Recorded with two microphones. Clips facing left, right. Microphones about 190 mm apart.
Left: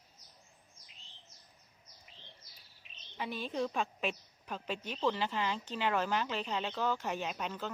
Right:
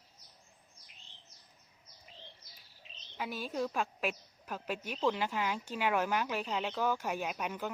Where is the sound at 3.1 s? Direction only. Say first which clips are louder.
Even; 5° right (ahead or behind).